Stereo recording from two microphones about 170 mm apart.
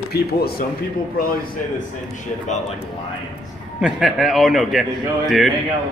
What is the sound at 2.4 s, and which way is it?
Speech, 45° left (ahead or behind).